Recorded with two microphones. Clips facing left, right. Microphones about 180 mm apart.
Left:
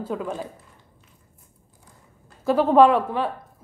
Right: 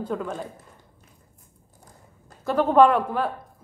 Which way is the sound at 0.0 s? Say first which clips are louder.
Left 1 dB; 5° left (ahead or behind).